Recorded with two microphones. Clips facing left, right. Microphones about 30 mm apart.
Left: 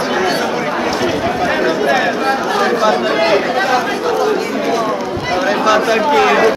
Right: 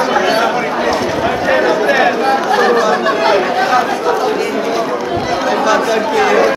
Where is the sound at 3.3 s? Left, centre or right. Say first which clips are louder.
Right 1 dB; centre.